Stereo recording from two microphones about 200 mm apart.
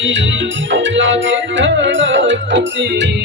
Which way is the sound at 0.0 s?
70° right (ahead or behind).